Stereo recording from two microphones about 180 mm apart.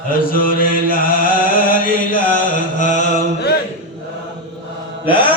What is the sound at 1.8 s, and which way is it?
Chant, 50° left (ahead or behind).